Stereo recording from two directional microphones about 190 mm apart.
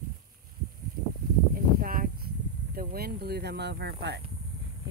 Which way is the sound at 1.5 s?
50° right (ahead or behind).